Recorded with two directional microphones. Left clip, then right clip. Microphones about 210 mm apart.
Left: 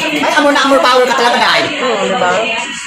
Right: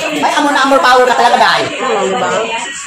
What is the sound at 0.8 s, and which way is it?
Speech, 35° right (ahead or behind).